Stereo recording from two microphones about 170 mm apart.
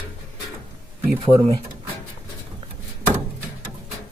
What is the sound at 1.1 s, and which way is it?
Speech, 30° right (ahead or behind).